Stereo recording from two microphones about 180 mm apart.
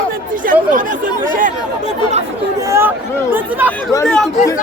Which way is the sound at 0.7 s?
45° right (ahead or behind).